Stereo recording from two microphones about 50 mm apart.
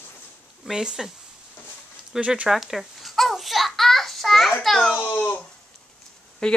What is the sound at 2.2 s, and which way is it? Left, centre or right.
Speech, right.